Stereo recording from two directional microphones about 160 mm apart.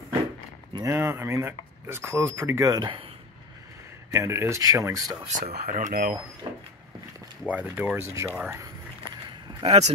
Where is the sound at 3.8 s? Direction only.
15° right (ahead or behind).